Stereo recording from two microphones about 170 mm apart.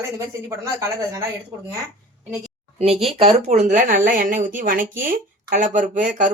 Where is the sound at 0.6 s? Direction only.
20° right (ahead or behind).